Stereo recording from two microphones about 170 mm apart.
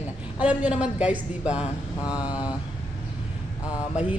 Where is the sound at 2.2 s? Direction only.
25° left (ahead or behind).